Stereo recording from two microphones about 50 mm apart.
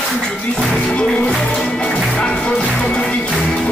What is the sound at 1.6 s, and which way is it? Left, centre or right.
Music, left.